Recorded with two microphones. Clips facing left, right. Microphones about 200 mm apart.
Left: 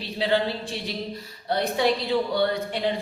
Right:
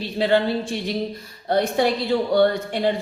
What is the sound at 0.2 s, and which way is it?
Speech, 50° right (ahead or behind).